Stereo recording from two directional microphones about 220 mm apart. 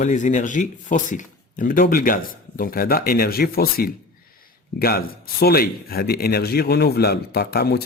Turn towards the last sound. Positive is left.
turn(degrees=45)  # may be behind; listen again after turning